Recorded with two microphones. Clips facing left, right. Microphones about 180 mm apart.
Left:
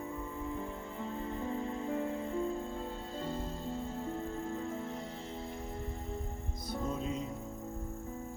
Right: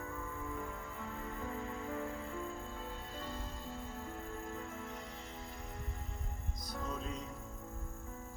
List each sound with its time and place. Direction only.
1.0 s music: 25° left (ahead or behind)
6.7 s music: 30° left (ahead or behind)